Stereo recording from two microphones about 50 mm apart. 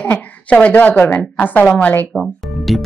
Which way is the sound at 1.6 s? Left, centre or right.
Left.